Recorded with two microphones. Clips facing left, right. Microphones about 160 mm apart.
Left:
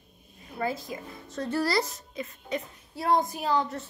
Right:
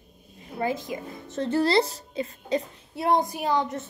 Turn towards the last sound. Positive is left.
turn(degrees=-20)  # may be behind; listen again after turning